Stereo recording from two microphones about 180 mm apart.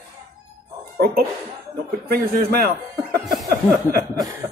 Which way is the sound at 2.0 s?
60° right (ahead or behind).